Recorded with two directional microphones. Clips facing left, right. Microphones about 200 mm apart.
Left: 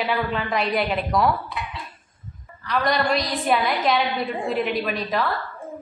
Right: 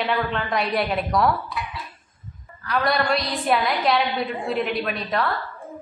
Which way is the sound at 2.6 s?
Centre (ahead or behind).